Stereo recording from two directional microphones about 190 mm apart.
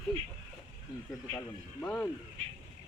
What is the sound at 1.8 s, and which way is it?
Speech, 10° left (ahead or behind).